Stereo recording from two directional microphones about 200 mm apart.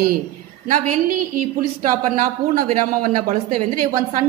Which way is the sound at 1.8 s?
40° right (ahead or behind).